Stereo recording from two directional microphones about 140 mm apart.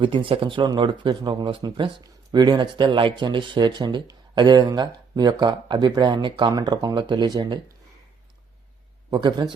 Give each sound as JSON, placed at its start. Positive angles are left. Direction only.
{"t": 0.0, "sound": "speech", "side_deg": -35}
{"t": 9.1, "sound": "speech", "side_deg": -35}